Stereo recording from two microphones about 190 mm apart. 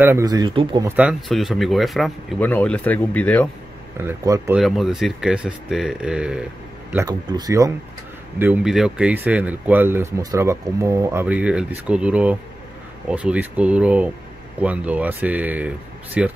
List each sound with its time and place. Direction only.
0.0 s speech: 15° right (ahead or behind)
0.8 s speech: 5° right (ahead or behind)
4.0 s speech: 15° right (ahead or behind)
4.6 s speech: centre (ahead or behind)
7.1 s speech: 20° right (ahead or behind)
8.4 s speech: 5° right (ahead or behind)